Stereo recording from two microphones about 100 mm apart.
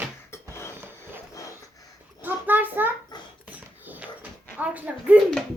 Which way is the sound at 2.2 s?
20° right (ahead or behind).